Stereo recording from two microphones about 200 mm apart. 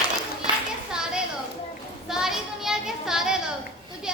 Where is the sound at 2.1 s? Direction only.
Centre (ahead or behind).